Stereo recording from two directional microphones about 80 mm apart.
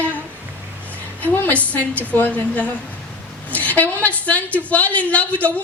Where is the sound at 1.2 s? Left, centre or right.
Left.